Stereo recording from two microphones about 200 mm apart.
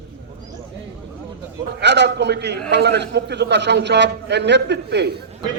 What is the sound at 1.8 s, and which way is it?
A man's voice, 60° right (ahead or behind).